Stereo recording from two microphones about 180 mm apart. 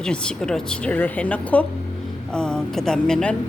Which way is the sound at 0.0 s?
5° left (ahead or behind).